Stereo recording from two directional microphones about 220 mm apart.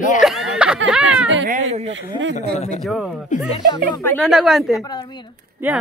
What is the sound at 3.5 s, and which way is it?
Speech, 20° left (ahead or behind).